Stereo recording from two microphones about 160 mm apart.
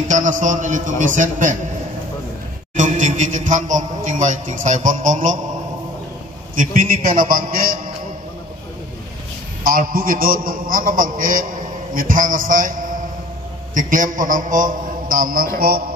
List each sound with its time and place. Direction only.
0.1 s a man's voice: 50° right (ahead or behind)
2.7 s a man's voice: 50° right (ahead or behind)
6.5 s a man's voice: 55° right (ahead or behind)
9.6 s a man's voice: 60° right (ahead or behind)